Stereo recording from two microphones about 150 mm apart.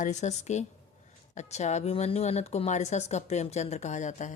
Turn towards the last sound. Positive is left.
turn(degrees=55)  # may be behind; listen again after turning